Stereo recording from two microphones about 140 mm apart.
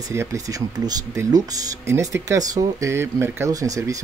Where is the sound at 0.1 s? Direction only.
20° right (ahead or behind).